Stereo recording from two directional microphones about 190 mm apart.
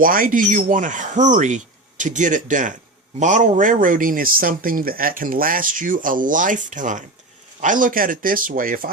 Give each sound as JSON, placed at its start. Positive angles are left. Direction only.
{"t": 0.0, "sound": "speech", "side_deg": -45}